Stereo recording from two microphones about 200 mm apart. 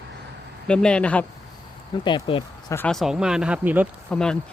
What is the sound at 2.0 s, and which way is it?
Speech, 25° left (ahead or behind).